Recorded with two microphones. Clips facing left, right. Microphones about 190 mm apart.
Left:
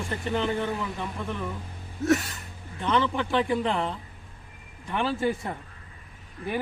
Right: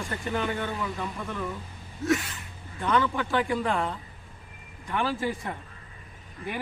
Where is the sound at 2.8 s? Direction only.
25° left (ahead or behind).